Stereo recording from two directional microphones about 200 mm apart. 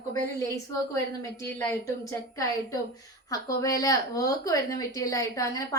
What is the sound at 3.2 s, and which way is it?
A woman's voice, 15° left (ahead or behind).